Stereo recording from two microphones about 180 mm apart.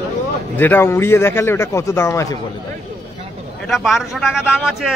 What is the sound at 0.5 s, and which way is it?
A man's voice, 10° left (ahead or behind).